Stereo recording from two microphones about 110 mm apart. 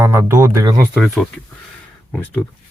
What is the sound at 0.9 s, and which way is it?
Speech, centre (ahead or behind).